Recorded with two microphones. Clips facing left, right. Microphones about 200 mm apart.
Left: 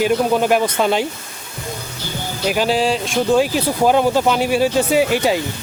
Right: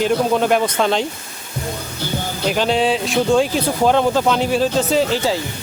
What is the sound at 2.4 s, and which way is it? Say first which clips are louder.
Speech: even; 5° left (ahead or behind).